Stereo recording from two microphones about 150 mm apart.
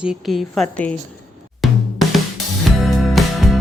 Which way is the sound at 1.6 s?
Centre (ahead or behind).